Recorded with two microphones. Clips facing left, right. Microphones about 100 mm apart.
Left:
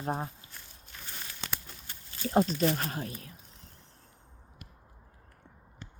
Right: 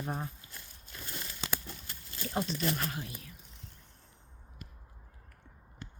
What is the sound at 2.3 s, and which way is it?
Speech, 45° left (ahead or behind).